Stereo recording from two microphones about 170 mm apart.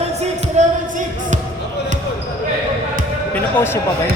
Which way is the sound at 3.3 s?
15° left (ahead or behind).